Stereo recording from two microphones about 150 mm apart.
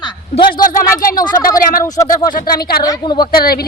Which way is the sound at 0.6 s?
65° left (ahead or behind).